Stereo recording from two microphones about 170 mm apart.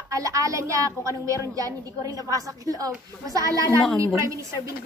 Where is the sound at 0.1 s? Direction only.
20° right (ahead or behind).